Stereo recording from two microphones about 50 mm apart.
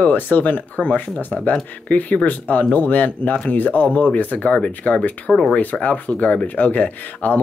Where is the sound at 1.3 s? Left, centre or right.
Centre.